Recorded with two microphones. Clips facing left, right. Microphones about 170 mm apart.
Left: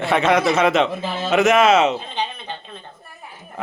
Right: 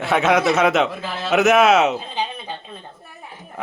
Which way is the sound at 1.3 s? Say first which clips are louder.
Even; centre (ahead or behind).